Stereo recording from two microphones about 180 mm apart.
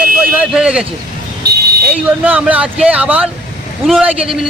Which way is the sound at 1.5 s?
65° right (ahead or behind).